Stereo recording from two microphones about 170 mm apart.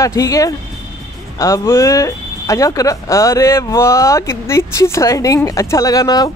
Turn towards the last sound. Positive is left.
turn(degrees=20)  # may be behind; listen again after turning